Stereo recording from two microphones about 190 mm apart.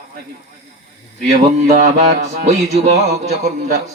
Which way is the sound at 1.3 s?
40° right (ahead or behind).